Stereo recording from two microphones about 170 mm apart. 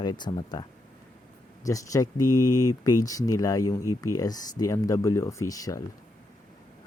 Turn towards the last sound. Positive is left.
turn(degrees=20)  # may be behind; listen again after turning